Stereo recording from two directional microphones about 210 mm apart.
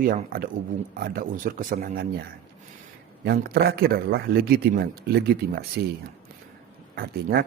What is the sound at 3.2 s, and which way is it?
A man's voice, 50° right (ahead or behind).